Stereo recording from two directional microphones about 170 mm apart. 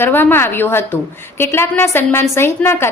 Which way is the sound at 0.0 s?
10° left (ahead or behind).